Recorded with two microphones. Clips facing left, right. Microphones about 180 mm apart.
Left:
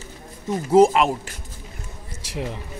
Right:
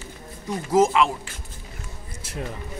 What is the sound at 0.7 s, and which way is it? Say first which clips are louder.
Speech: left 4 dB; 35° left (ahead or behind).